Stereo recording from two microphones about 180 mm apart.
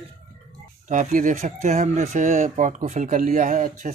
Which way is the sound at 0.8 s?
45° right (ahead or behind).